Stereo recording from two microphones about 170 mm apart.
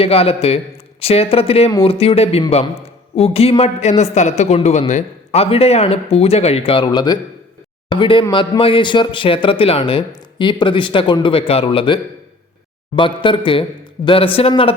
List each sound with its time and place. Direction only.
0.0 s a man's voice: 35° left (ahead or behind)
13.0 s speech: 30° left (ahead or behind)